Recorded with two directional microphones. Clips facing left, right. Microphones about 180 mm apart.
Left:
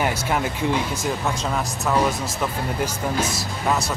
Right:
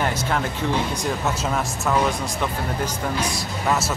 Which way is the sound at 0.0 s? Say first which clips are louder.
Left 1 dB; 10° left (ahead or behind).